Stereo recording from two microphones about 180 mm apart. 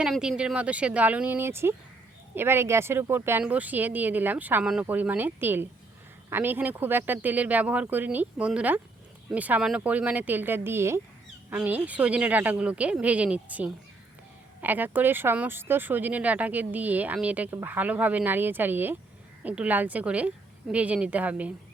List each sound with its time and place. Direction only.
0.0 s speech: 5° right (ahead or behind)